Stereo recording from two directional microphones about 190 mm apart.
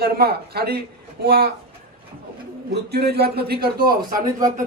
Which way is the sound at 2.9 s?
55° right (ahead or behind).